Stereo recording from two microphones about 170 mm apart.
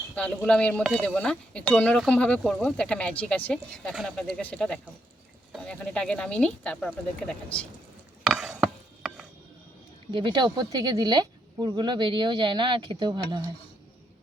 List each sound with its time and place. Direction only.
0.2 s speech: 5° left (ahead or behind)
8.2 s a sound: centre (ahead or behind)
10.1 s speech: 25° right (ahead or behind)